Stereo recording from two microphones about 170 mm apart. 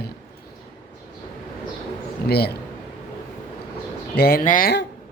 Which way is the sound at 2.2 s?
70° left (ahead or behind).